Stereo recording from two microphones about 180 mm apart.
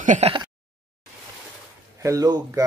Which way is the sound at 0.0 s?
45° right (ahead or behind).